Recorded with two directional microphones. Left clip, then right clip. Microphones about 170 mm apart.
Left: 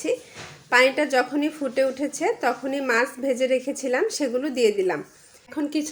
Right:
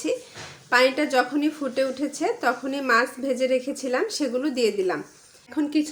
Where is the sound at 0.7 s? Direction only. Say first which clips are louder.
Left 1 dB; 10° left (ahead or behind).